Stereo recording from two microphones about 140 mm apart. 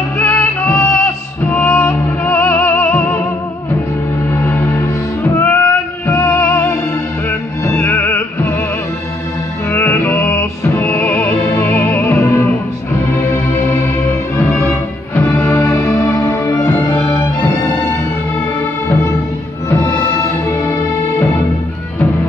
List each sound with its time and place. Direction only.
0.2 s music: 10° left (ahead or behind)
4.5 s music: 20° left (ahead or behind)
9.7 s music: 20° left (ahead or behind)
14.4 s music: 20° left (ahead or behind)